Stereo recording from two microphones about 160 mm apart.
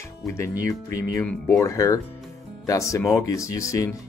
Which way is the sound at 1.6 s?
20° left (ahead or behind).